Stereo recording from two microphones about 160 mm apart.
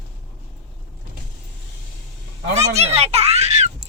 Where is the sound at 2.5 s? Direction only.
45° right (ahead or behind).